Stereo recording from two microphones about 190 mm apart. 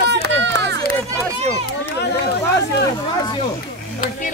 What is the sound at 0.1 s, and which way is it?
Run, 65° right (ahead or behind).